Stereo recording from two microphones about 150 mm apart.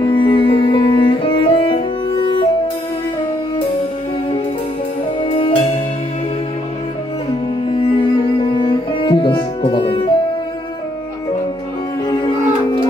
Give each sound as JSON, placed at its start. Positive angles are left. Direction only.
{"t": 0.0, "sound": "music", "side_deg": 35}
{"t": 5.2, "sound": "music", "side_deg": 35}
{"t": 7.6, "sound": "music", "side_deg": 35}
{"t": 12.1, "sound": "music", "side_deg": 25}